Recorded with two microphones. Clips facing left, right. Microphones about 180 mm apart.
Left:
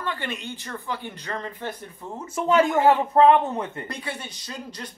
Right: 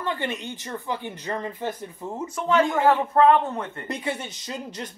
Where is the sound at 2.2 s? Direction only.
25° left (ahead or behind).